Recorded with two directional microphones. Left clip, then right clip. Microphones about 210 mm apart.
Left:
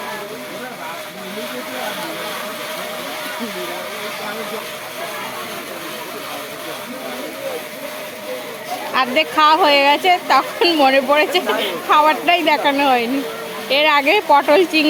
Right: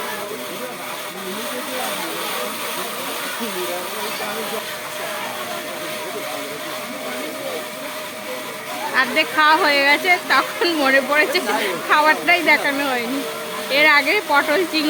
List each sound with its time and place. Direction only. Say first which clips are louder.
9.0 s speech: left 2 dB; 15° left (ahead or behind)